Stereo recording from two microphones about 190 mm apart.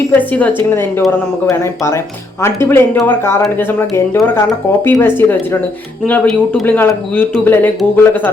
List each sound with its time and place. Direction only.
0.1 s speech: 10° left (ahead or behind)